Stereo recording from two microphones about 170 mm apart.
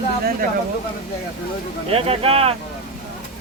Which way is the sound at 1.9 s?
35° right (ahead or behind).